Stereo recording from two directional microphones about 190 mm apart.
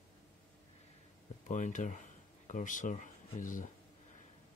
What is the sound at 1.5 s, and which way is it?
Speech, 40° left (ahead or behind).